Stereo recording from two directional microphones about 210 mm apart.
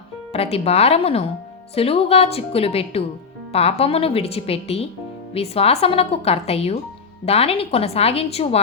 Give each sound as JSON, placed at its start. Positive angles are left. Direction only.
{"t": 0.3, "sound": "speech", "side_deg": 30}